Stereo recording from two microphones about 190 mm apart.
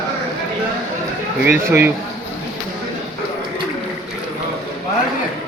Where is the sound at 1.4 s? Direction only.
10° right (ahead or behind).